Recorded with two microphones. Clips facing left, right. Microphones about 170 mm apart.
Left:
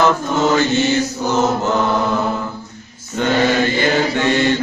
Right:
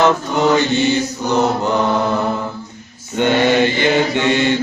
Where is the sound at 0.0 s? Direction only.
15° right (ahead or behind).